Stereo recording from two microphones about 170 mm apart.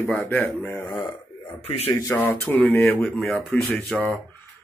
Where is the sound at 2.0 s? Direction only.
15° left (ahead or behind).